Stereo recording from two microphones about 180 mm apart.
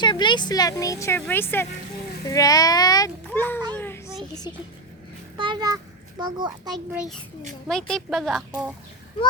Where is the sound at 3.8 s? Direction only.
10° left (ahead or behind).